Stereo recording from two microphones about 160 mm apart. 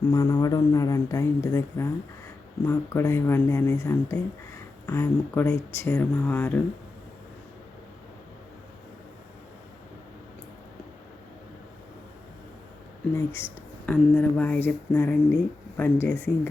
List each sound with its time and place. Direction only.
0.1 s speech: 20° left (ahead or behind)
13.1 s speech: 15° left (ahead or behind)